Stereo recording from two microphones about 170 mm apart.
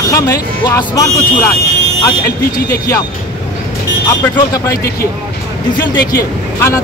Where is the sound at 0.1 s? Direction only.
20° left (ahead or behind).